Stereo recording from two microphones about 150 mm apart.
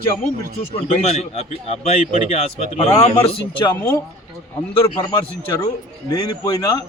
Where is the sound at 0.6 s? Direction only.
40° left (ahead or behind).